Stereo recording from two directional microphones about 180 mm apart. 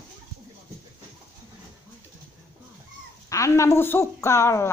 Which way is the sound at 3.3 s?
15° left (ahead or behind).